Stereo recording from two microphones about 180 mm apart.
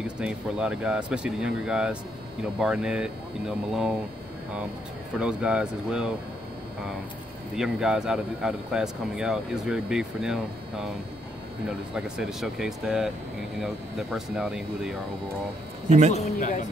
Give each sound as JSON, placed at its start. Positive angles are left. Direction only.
{"t": 0.0, "sound": "speech", "side_deg": -5}
{"t": 5.2, "sound": "speech", "side_deg": -5}
{"t": 7.5, "sound": "speech", "side_deg": -5}
{"t": 11.9, "sound": "speech", "side_deg": -5}
{"t": 14.1, "sound": "speech", "side_deg": -5}
{"t": 16.1, "sound": "a man's voice", "side_deg": 40}